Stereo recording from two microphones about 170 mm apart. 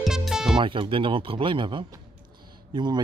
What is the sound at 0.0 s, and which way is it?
Music, centre (ahead or behind).